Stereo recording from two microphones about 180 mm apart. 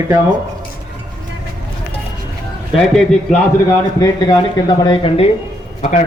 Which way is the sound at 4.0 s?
20° left (ahead or behind).